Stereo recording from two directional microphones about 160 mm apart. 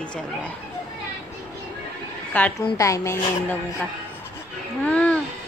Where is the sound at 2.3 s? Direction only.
10° left (ahead or behind).